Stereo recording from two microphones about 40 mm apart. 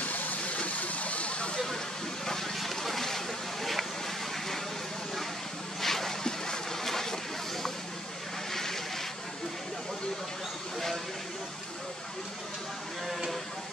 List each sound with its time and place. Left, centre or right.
0.0 s a sound: left
2.2 s vehicle: centre
5.8 s boat: centre